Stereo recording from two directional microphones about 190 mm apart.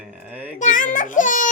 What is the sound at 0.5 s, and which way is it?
Speech, 40° left (ahead or behind).